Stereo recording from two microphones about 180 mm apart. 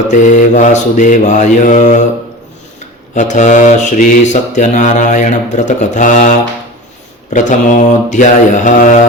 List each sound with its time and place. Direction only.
0.1 s mantra: 45° left (ahead or behind)
3.2 s mantra: 45° left (ahead or behind)